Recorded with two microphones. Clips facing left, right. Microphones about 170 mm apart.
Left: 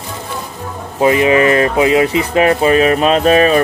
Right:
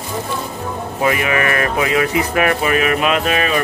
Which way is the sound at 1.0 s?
25° left (ahead or behind).